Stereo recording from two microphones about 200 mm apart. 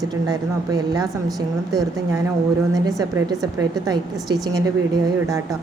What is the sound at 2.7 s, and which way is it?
Speech, 20° right (ahead or behind).